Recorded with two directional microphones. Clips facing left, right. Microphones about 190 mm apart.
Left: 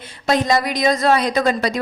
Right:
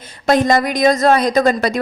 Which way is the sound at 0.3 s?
50° right (ahead or behind).